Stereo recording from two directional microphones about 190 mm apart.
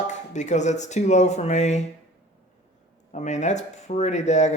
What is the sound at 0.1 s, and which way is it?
Speech, 40° left (ahead or behind).